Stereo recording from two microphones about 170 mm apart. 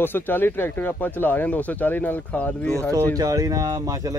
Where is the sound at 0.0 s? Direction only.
10° left (ahead or behind).